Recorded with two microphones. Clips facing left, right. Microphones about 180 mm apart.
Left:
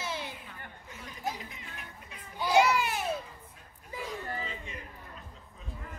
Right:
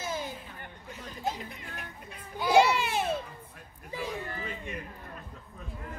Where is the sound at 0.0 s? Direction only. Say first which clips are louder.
Right 3 dB; 45° right (ahead or behind).